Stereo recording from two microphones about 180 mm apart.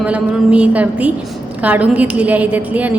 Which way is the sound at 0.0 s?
5° right (ahead or behind).